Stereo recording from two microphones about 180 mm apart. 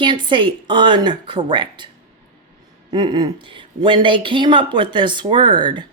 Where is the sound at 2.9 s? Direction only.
25° right (ahead or behind).